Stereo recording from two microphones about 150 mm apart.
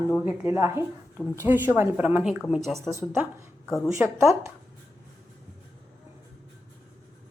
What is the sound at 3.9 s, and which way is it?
Speech, 20° right (ahead or behind).